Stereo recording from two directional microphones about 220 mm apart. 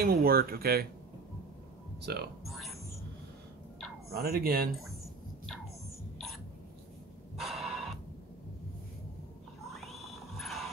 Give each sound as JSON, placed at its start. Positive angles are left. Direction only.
{"t": 0.0, "sound": "speech", "side_deg": -45}
{"t": 2.0, "sound": "speech", "side_deg": -50}
{"t": 2.4, "sound": "music", "side_deg": 0}
{"t": 4.1, "sound": "speech", "side_deg": -45}
{"t": 7.3, "sound": "a sound", "side_deg": 0}
{"t": 9.8, "sound": "a sound", "side_deg": 0}